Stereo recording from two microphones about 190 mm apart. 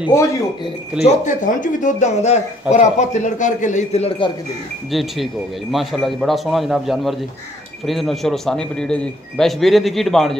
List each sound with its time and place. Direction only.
1.0 s a man's voice: 40° left (ahead or behind)
4.9 s a man's voice: centre (ahead or behind)